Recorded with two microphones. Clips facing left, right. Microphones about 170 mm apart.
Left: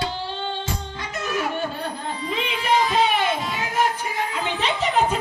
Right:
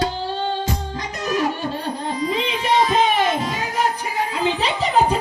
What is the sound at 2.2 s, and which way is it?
Music, 40° right (ahead or behind).